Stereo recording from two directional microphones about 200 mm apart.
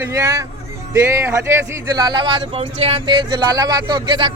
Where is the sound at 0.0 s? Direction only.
15° right (ahead or behind).